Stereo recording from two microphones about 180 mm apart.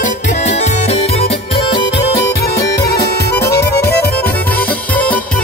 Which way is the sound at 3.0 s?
65° left (ahead or behind).